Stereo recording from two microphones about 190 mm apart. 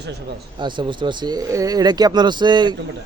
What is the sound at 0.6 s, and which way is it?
Speech, 25° right (ahead or behind).